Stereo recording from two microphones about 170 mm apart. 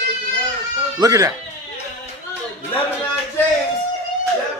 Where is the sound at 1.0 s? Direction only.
20° right (ahead or behind).